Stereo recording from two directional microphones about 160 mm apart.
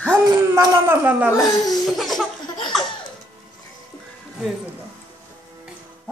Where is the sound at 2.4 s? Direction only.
25° left (ahead or behind).